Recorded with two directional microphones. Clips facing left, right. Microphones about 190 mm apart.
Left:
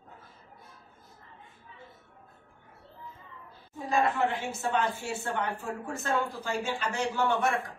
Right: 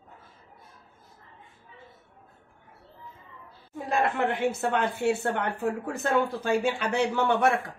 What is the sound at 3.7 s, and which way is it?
Speech, 60° right (ahead or behind).